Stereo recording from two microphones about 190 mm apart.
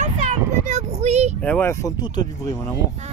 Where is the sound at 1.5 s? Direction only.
10° left (ahead or behind).